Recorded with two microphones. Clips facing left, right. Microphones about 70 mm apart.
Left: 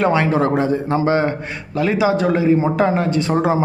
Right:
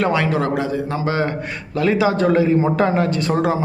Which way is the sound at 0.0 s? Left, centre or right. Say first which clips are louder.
Left 2 dB; left.